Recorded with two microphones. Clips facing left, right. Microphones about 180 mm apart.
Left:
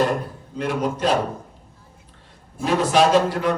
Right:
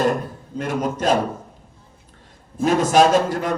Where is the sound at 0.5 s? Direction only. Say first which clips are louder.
Even; 45° right (ahead or behind).